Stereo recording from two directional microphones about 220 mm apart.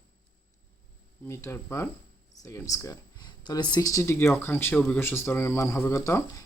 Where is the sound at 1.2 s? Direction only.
10° left (ahead or behind).